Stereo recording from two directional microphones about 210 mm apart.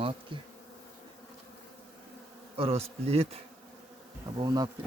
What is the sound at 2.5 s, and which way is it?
Bee, 30° right (ahead or behind).